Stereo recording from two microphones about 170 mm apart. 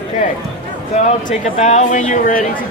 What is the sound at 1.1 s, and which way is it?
Speech, 45° left (ahead or behind).